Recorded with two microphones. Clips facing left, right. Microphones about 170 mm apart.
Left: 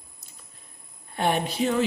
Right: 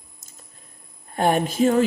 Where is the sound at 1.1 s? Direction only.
45° right (ahead or behind).